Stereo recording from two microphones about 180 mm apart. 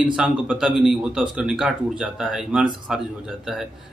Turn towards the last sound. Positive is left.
turn(degrees=0)  # may be behind; listen again after turning